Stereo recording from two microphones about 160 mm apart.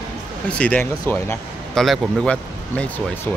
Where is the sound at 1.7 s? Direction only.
Centre (ahead or behind).